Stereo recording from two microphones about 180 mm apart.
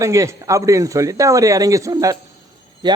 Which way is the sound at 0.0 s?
15° right (ahead or behind).